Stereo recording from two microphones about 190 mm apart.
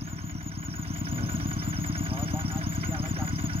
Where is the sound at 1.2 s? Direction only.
30° right (ahead or behind).